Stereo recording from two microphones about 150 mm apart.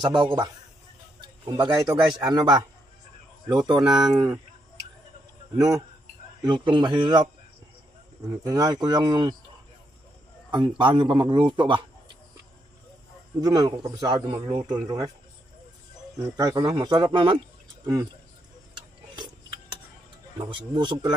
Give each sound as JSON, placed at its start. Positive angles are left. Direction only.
{"t": 0.0, "sound": "a man's voice", "side_deg": -30}
{"t": 5.6, "sound": "a man's voice", "side_deg": -20}
{"t": 10.5, "sound": "speech", "side_deg": -35}
{"t": 13.4, "sound": "a man's voice", "side_deg": -25}
{"t": 16.3, "sound": "a man's voice", "side_deg": -25}
{"t": 20.3, "sound": "speech", "side_deg": -30}